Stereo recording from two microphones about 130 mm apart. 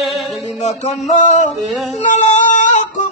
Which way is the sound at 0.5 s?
60° left (ahead or behind).